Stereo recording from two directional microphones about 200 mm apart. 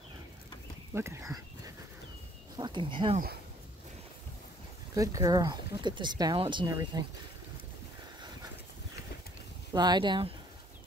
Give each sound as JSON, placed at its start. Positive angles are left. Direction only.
{"t": 0.9, "sound": "speech", "side_deg": -15}
{"t": 2.5, "sound": "speech", "side_deg": -25}
{"t": 4.9, "sound": "speech", "side_deg": -15}
{"t": 9.7, "sound": "speech", "side_deg": -20}